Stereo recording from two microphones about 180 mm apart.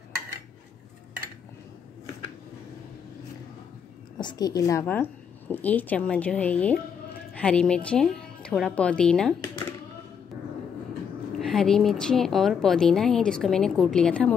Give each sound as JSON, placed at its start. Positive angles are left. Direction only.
{"t": 4.2, "sound": "a woman's voice", "side_deg": 25}
{"t": 11.3, "sound": "a woman's voice", "side_deg": 0}